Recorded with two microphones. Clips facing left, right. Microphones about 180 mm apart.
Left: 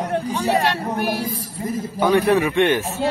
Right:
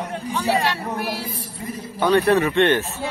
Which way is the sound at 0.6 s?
55° left (ahead or behind).